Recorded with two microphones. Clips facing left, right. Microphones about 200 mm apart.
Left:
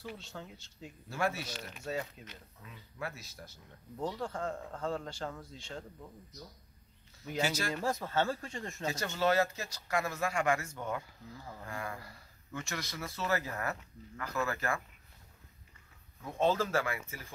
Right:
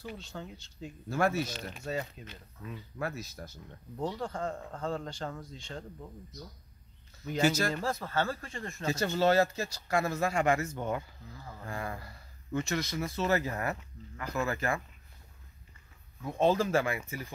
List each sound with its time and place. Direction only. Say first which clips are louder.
0.0 s speech: right 3 dB; centre (ahead or behind)
1.1 s speech: right 5 dB; 45° right (ahead or behind)
1.5 s speech: right 3 dB; 20° right (ahead or behind)
2.2 s speech: right 3 dB; centre (ahead or behind)
3.0 s speech: right 5 dB; 45° right (ahead or behind)
4.0 s speech: right 2 dB; centre (ahead or behind)
7.4 s speech: right 8 dB; 45° right (ahead or behind)
7.8 s speech: even; 20° left (ahead or behind)
8.9 s speech: right 4 dB; 30° right (ahead or behind)
16.3 s speech: right 3 dB; 15° right (ahead or behind)